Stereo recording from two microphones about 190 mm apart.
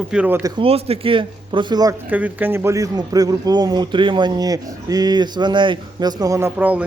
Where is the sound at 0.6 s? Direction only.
30° right (ahead or behind).